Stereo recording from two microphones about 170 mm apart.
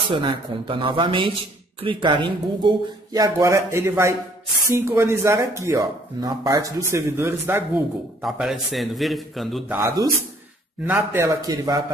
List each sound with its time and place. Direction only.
0.1 s a man's voice: 30° right (ahead or behind); by 7.6 s 15° right (ahead or behind)
8.2 s a man's voice: centre (ahead or behind)
9.7 s a man's voice: 15° right (ahead or behind)